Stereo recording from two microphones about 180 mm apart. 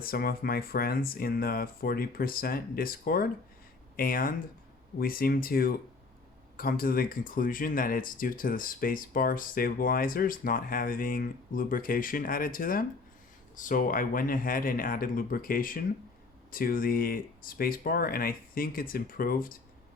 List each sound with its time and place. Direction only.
0.0 s speech: 55° left (ahead or behind)